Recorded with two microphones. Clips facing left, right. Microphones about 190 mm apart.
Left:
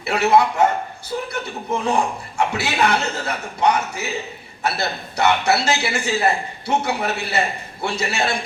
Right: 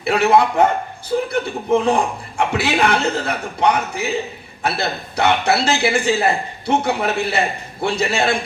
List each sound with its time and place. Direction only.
0.1 s a man's voice: 55° right (ahead or behind)